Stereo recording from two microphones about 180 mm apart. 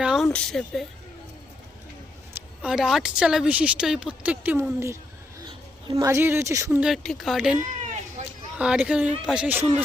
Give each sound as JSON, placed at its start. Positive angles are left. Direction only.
{"t": 0.0, "sound": "a sound", "side_deg": -5}
{"t": 0.3, "sound": "speech", "side_deg": 0}
{"t": 2.6, "sound": "a woman's voice", "side_deg": -5}
{"t": 6.8, "sound": "speech", "side_deg": 0}
{"t": 7.8, "sound": "a sound", "side_deg": -40}
{"t": 8.5, "sound": "speech", "side_deg": -5}